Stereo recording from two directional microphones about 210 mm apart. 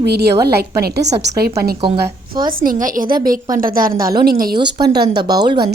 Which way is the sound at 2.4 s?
40° right (ahead or behind).